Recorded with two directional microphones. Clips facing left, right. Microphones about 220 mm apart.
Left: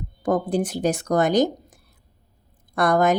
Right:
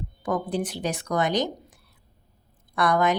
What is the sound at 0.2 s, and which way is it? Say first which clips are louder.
A woman's voice: left 5 dB; 45° left (ahead or behind).